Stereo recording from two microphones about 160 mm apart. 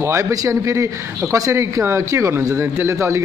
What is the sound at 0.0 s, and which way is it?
A man's voice, 20° right (ahead or behind).